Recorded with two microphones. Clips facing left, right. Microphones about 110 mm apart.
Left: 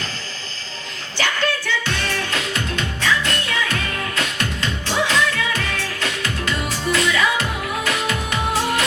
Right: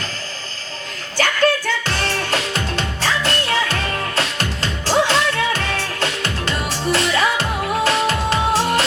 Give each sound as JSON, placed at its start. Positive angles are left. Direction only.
{"t": 1.1, "sound": "music", "side_deg": -45}